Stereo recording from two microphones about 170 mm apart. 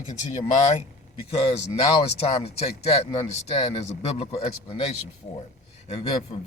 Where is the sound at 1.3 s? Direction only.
35° left (ahead or behind).